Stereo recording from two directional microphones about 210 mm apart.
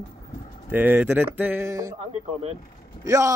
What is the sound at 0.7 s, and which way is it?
Babbling, 10° right (ahead or behind).